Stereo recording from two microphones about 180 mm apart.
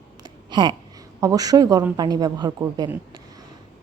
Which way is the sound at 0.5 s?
25° right (ahead or behind).